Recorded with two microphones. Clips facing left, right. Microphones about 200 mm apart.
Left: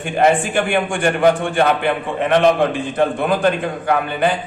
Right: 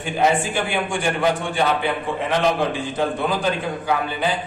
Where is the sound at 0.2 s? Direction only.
55° left (ahead or behind).